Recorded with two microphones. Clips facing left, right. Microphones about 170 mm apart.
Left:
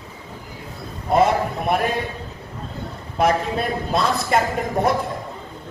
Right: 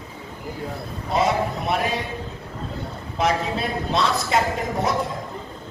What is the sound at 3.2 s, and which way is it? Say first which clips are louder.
A man's voice: left 3 dB; 55° left (ahead or behind).